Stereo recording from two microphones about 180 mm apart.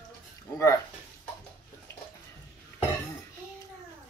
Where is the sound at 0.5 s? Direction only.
15° left (ahead or behind).